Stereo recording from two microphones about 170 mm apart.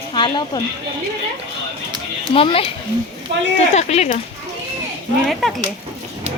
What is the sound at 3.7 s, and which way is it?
Speech, 40° left (ahead or behind).